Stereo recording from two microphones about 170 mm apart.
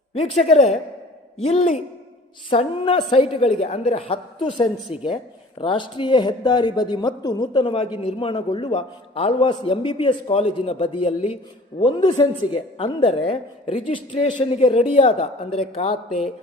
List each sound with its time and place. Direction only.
0.1 s a woman's voice: 40° left (ahead or behind)